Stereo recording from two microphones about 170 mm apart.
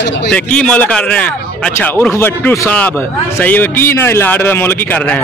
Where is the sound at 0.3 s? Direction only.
5° left (ahead or behind).